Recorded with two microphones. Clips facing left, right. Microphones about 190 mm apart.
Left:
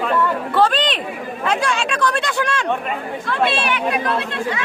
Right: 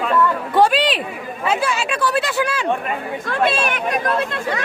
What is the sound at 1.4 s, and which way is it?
Speech, 5° right (ahead or behind).